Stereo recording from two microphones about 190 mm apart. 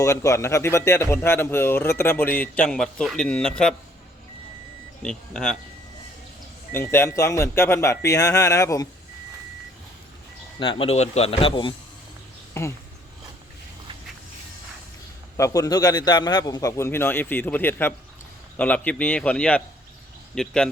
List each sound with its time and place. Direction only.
0.0 s a man's voice: 15° left (ahead or behind)
5.0 s speech: 5° left (ahead or behind)
6.7 s a man's voice: 10° left (ahead or behind)
10.6 s a man's voice: 30° left (ahead or behind)
15.4 s a man's voice: 15° left (ahead or behind)